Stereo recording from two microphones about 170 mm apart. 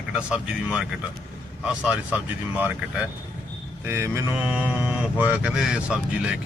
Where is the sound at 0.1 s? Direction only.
5° right (ahead or behind).